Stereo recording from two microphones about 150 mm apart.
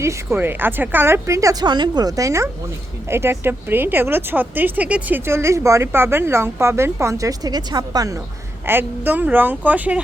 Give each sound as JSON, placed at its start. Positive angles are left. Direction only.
{"t": 0.0, "sound": "a woman's voice", "side_deg": -15}